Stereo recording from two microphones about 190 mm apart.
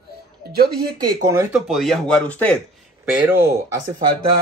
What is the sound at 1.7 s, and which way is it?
Speech, centre (ahead or behind).